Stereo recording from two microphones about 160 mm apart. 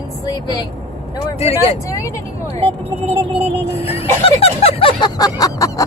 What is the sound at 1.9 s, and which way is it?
Speech, 20° left (ahead or behind).